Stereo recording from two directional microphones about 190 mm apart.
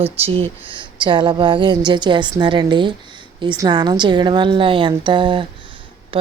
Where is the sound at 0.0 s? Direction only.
30° right (ahead or behind).